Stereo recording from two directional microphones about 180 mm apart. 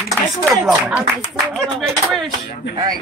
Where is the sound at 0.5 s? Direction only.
10° right (ahead or behind).